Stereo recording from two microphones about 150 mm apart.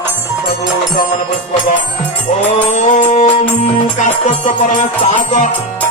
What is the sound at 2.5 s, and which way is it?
Music, 55° left (ahead or behind).